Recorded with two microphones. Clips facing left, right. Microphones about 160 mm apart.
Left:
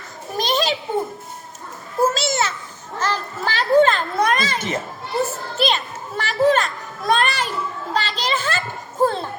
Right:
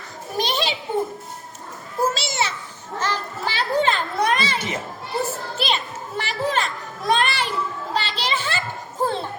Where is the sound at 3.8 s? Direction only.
40° left (ahead or behind).